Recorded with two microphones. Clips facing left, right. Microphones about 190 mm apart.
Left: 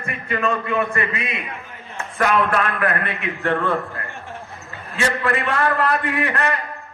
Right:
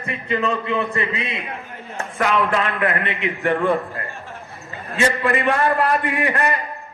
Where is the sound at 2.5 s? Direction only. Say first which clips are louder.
Even; 20° right (ahead or behind).